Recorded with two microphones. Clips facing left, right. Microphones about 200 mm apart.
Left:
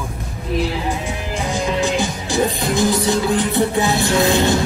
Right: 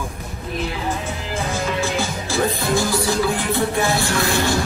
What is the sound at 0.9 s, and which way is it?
Music, 15° left (ahead or behind).